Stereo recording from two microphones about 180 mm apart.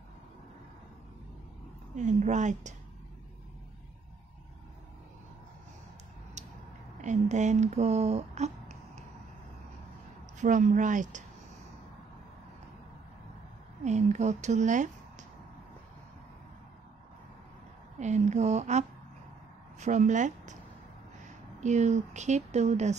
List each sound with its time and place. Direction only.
2.0 s speech: 40° right (ahead or behind)
6.4 s a sound: 40° right (ahead or behind)
7.0 s speech: 40° right (ahead or behind)
10.3 s speech: 45° right (ahead or behind)
13.8 s speech: 40° right (ahead or behind)
17.9 s a sound: 40° right (ahead or behind)
19.8 s speech: 45° right (ahead or behind)
21.5 s speech: 40° right (ahead or behind)